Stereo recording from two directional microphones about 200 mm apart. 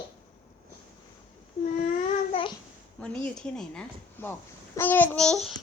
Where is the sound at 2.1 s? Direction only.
25° left (ahead or behind).